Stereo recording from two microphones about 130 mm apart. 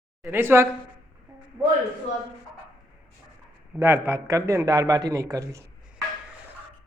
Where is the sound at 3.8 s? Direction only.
20° right (ahead or behind).